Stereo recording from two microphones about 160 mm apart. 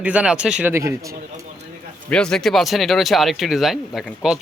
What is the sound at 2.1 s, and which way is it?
Speech, 5° left (ahead or behind).